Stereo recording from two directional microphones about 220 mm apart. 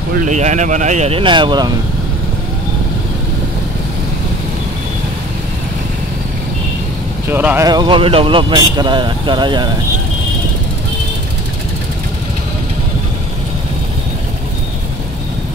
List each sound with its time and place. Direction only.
0.2 s speech: 35° right (ahead or behind)
7.2 s speech: 10° right (ahead or behind)